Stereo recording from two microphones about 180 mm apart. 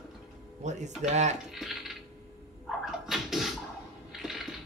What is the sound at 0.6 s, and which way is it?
Speech, 40° right (ahead or behind).